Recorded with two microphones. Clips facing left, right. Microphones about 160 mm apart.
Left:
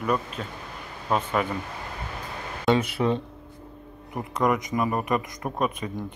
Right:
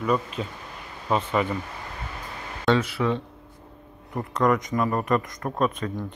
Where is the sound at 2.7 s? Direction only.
20° left (ahead or behind).